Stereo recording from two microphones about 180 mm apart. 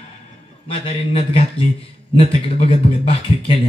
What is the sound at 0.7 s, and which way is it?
Speech, 30° left (ahead or behind).